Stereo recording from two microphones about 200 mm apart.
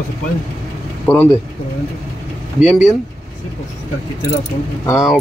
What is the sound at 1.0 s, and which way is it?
Speech, 10° left (ahead or behind).